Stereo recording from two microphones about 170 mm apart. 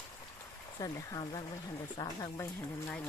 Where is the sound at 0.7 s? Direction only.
20° left (ahead or behind).